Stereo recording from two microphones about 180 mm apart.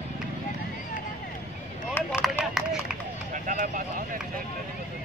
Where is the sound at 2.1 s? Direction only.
Centre (ahead or behind).